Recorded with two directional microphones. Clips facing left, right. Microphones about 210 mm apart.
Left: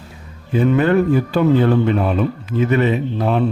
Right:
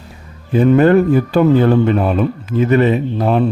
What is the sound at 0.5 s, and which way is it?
A man's voice, 40° right (ahead or behind).